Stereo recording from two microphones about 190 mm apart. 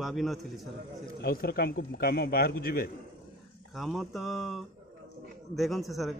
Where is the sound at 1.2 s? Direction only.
55° left (ahead or behind).